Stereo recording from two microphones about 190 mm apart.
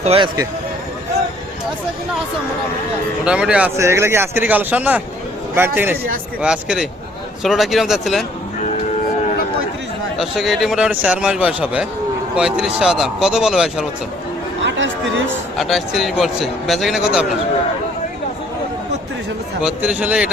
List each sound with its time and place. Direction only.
0.0 s a man's voice: 30° right (ahead or behind)
3.2 s a man's voice: 5° right (ahead or behind)
10.2 s a man's voice: centre (ahead or behind)
14.6 s speech: 75° right (ahead or behind)
15.5 s a man's voice: centre (ahead or behind)
19.6 s a man's voice: 5° right (ahead or behind)